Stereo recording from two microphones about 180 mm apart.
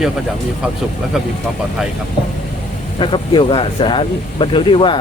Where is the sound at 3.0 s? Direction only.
25° left (ahead or behind).